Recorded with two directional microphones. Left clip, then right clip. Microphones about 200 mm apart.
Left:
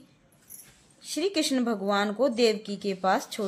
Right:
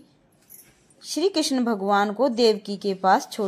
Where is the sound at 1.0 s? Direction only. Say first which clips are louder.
Right 4 dB; 15° right (ahead or behind).